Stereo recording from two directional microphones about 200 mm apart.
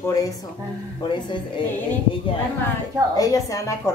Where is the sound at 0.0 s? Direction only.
15° left (ahead or behind).